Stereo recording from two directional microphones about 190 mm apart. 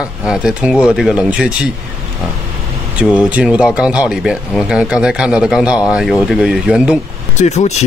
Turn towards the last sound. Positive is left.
turn(degrees=35)  # may be behind; listen again after turning